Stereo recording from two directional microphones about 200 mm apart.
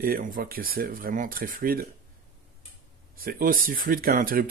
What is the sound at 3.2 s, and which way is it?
Speech, 45° right (ahead or behind).